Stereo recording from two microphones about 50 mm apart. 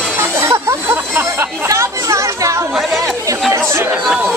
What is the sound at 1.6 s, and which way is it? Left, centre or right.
Speech, right.